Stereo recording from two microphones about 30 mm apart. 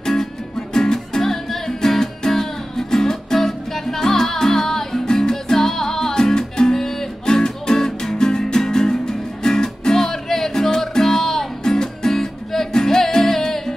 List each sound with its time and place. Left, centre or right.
0.0 s music: centre